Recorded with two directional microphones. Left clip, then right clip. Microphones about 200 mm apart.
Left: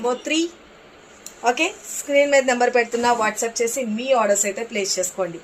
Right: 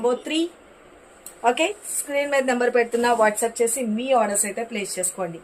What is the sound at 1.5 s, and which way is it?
Speech, 15° right (ahead or behind).